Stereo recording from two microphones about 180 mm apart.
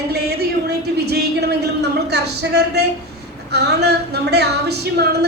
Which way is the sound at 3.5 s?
65° right (ahead or behind).